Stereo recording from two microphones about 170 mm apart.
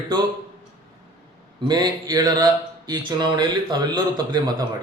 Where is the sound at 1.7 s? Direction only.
25° right (ahead or behind).